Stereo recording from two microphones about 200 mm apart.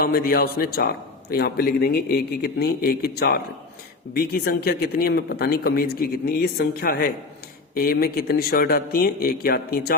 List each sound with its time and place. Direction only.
0.0 s a man's voice: 50° left (ahead or behind)